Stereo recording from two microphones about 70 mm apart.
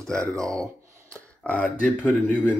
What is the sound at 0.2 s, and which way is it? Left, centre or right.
Speech, right.